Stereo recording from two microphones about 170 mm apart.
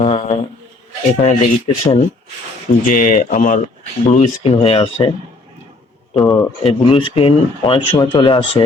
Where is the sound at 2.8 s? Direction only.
55° left (ahead or behind).